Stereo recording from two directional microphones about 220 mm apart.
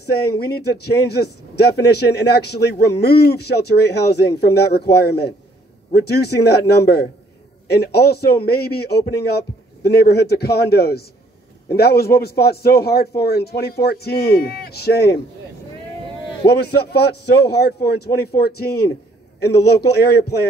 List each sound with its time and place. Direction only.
0.1 s a man's voice: 45° left (ahead or behind)
16.4 s a man's voice: 45° left (ahead or behind)